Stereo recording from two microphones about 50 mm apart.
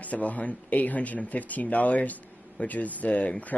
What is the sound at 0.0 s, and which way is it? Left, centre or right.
Speech, left.